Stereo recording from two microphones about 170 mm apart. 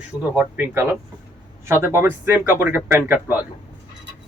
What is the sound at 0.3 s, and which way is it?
Speech, 10° right (ahead or behind).